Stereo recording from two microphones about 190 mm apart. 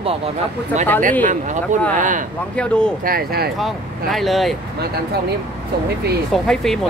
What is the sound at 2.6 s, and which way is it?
Speech, 5° left (ahead or behind).